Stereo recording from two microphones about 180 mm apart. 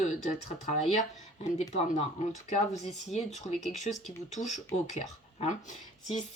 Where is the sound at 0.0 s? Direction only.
40° left (ahead or behind).